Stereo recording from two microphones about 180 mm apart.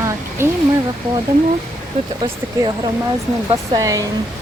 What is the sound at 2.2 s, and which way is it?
Speech, 25° right (ahead or behind).